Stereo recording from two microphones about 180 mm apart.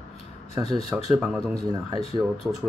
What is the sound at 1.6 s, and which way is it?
Speech, 20° right (ahead or behind).